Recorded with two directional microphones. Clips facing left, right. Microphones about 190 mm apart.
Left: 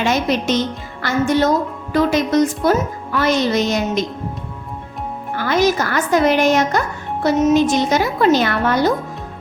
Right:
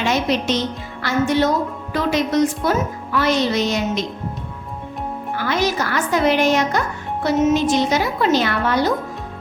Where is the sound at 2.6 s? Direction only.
45° left (ahead or behind).